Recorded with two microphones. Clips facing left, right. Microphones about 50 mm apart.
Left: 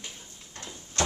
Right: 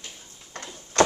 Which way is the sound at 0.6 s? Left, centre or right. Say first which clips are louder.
Right 9 dB; right.